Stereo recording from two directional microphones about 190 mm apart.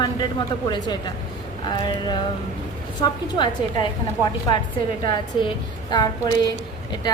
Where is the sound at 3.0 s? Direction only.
25° left (ahead or behind).